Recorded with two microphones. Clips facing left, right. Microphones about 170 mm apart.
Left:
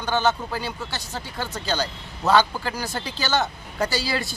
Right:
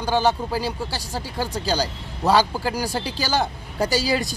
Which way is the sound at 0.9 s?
10° right (ahead or behind).